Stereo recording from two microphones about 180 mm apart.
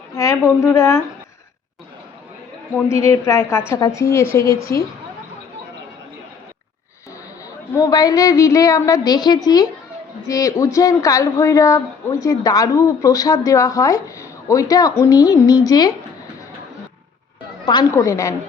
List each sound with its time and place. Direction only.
0.2 s a woman's voice: 15° left (ahead or behind)
2.7 s a woman's voice: 15° left (ahead or behind)
7.7 s speech: 20° left (ahead or behind)
17.7 s a woman's voice: 20° left (ahead or behind)